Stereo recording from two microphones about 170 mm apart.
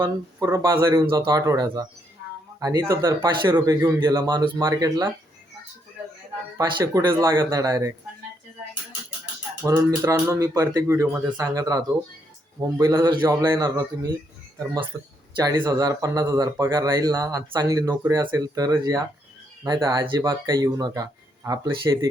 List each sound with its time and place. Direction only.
0.0 s speech: 20° right (ahead or behind)
6.6 s speech: 20° right (ahead or behind)
9.6 s speech: 20° right (ahead or behind)
13.2 s speech: 15° right (ahead or behind)